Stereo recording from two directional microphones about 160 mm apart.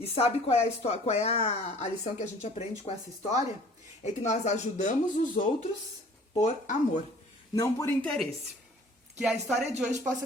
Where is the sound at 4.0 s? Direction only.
45° left (ahead or behind).